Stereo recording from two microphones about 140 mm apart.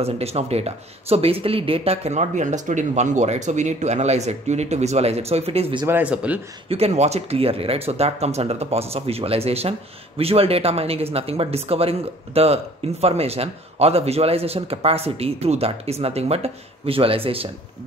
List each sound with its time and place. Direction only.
0.0 s speech: 45° right (ahead or behind)
5.9 s speech: 10° right (ahead or behind)
6.7 s speech: 50° right (ahead or behind)